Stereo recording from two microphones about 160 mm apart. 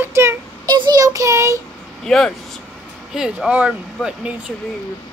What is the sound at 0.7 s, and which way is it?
Child singing, 25° right (ahead or behind).